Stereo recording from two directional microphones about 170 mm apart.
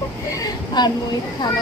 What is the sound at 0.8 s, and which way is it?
Speech, 25° left (ahead or behind).